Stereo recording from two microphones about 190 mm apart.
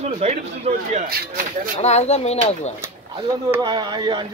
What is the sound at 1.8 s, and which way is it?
Speech, 35° left (ahead or behind).